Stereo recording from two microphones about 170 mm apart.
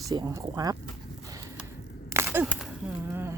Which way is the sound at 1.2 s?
20° right (ahead or behind).